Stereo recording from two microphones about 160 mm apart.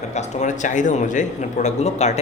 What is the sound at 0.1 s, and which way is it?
A man's voice, 45° left (ahead or behind).